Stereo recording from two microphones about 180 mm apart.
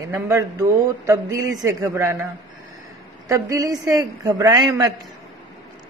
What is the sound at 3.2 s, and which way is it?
A man's voice, 20° right (ahead or behind).